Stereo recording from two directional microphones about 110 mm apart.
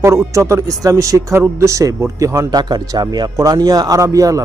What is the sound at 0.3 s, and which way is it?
A man's voice, 30° right (ahead or behind).